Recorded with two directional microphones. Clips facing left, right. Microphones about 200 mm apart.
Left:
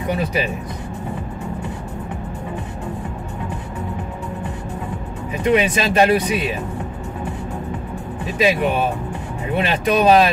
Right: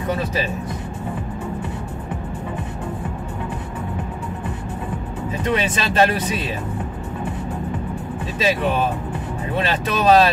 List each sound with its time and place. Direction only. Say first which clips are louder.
5.4 s speech: left 5 dB; 15° left (ahead or behind)
8.4 s speech: left 2 dB; 15° left (ahead or behind)